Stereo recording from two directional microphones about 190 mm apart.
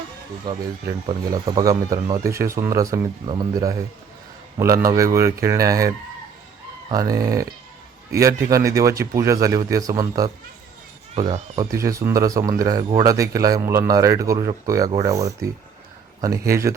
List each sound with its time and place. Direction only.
0.4 s speech: 25° right (ahead or behind)
4.8 s speech: 15° right (ahead or behind)
6.9 s speech: 20° right (ahead or behind)
11.6 s speech: 15° right (ahead or behind)